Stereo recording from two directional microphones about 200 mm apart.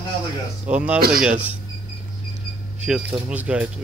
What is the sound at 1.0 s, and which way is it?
Speech, 50° right (ahead or behind).